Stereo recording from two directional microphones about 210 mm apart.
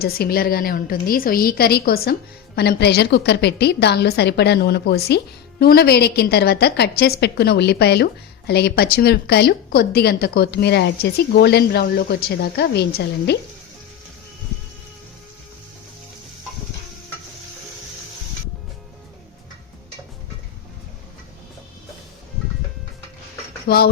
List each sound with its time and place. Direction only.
0.0 s a woman's voice: 45° left (ahead or behind)
23.6 s speech: 50° left (ahead or behind)